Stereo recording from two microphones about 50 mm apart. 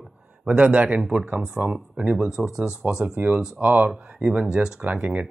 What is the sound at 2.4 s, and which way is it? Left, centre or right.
Speech, centre.